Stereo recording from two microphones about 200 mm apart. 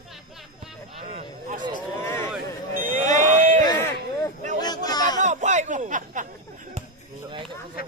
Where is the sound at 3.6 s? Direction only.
15° left (ahead or behind).